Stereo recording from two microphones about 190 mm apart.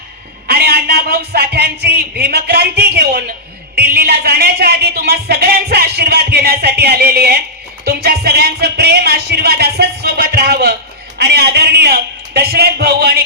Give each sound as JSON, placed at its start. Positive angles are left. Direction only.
{"t": 0.4, "sound": "a man's voice", "side_deg": -55}